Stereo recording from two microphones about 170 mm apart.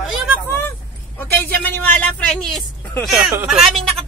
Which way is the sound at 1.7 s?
10° left (ahead or behind).